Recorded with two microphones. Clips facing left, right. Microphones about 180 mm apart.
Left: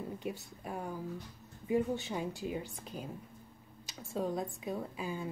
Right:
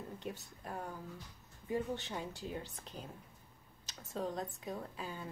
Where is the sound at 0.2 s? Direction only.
10° left (ahead or behind).